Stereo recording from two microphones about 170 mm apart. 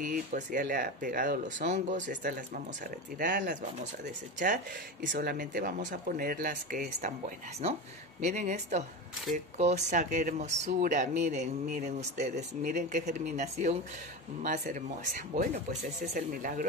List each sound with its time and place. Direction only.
0.0 s speech: 55° right (ahead or behind)
5.0 s speech: 60° right (ahead or behind)